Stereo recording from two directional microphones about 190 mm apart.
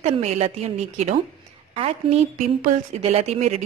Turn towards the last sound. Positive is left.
turn(degrees=-35)  # may be behind; listen again after turning